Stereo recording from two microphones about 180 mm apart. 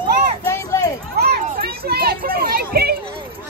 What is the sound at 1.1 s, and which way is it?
Children playing, 60° right (ahead or behind).